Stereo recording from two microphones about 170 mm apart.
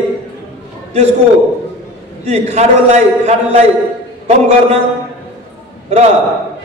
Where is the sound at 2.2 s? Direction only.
40° right (ahead or behind).